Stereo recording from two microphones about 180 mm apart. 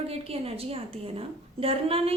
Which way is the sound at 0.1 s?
35° right (ahead or behind).